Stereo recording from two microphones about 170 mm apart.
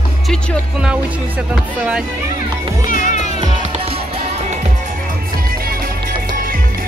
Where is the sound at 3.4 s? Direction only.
35° right (ahead or behind).